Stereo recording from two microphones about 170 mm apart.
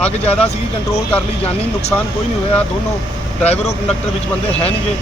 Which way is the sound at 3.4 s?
40° left (ahead or behind).